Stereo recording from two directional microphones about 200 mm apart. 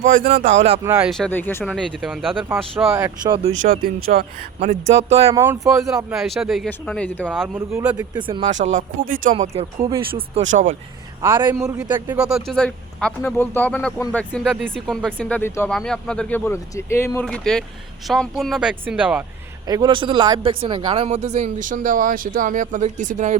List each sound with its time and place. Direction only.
0.0 s speech: 45° right (ahead or behind)
0.9 s speech: 10° right (ahead or behind)
1.1 s a man's voice: 5° left (ahead or behind)
2.9 s speech: 20° right (ahead or behind)
3.6 s speech: 45° right (ahead or behind)
5.3 s speech: 15° right (ahead or behind)
6.1 s a man's voice: centre (ahead or behind)
7.4 s speech: 15° right (ahead or behind)
8.4 s speech: 35° right (ahead or behind)
9.3 s speech: 30° right (ahead or behind)
11.3 s speech: 20° right (ahead or behind)
12.1 s a man's voice: 5° right (ahead or behind)
19.6 s speech: 20° right (ahead or behind); by 23.4 s 40° right (ahead or behind)